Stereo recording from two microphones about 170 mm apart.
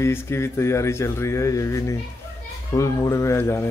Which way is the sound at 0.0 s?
15° left (ahead or behind).